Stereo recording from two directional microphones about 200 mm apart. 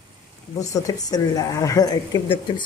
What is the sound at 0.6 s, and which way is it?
Speech, 15° left (ahead or behind).